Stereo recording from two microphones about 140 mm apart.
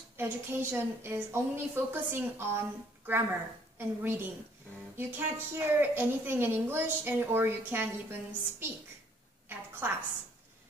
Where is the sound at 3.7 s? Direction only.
15° right (ahead or behind).